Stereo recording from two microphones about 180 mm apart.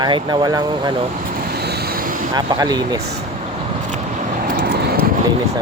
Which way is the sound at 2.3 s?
20° right (ahead or behind).